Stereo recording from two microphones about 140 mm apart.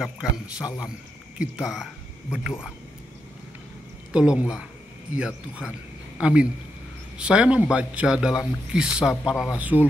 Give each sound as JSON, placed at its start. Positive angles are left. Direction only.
{"t": 0.0, "sound": "a man's voice", "side_deg": -5}
{"t": 0.7, "sound": "speech", "side_deg": 25}
{"t": 1.4, "sound": "a man's voice", "side_deg": -5}
{"t": 4.1, "sound": "a man's voice", "side_deg": -5}